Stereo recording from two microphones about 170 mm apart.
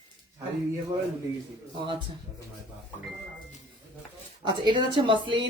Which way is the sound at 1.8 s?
30° right (ahead or behind).